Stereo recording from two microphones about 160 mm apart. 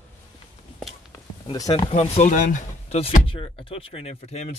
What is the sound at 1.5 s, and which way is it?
Speech, 25° left (ahead or behind).